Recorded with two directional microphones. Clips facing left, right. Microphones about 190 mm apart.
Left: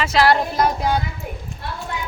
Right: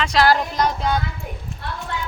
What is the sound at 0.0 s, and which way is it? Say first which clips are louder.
Speech: left 1 dB; 5° left (ahead or behind).